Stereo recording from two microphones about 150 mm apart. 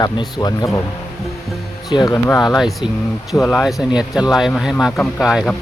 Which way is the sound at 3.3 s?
Centre (ahead or behind).